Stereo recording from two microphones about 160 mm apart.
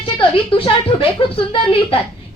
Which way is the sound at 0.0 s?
35° left (ahead or behind).